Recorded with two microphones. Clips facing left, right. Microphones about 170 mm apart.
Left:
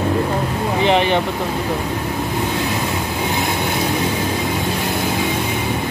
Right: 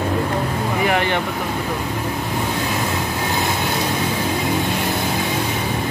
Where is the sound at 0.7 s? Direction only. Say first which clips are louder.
Left 4 dB; 20° left (ahead or behind).